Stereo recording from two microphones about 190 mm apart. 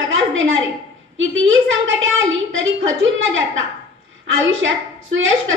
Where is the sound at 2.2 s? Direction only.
90° right.